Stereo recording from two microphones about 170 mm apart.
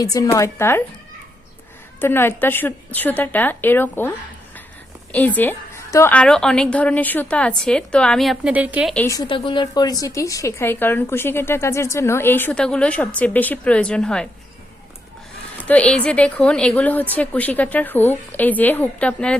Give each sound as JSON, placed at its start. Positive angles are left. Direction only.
{"t": 0.0, "sound": "speech", "side_deg": 20}
{"t": 2.0, "sound": "speech", "side_deg": 15}
{"t": 5.1, "sound": "speech", "side_deg": 10}
{"t": 9.0, "sound": "speech", "side_deg": 25}
{"t": 15.6, "sound": "speech", "side_deg": 10}